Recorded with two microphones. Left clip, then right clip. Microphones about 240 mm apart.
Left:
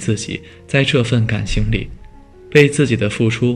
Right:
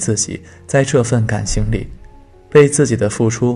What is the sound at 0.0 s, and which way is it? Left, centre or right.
Speech, right.